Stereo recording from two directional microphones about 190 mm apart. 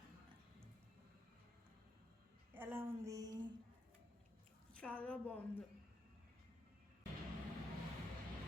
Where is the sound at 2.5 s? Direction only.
10° right (ahead or behind).